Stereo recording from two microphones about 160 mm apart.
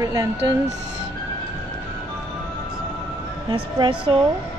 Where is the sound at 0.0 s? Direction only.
25° right (ahead or behind).